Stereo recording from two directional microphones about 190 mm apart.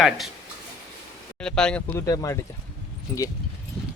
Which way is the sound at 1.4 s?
5° left (ahead or behind).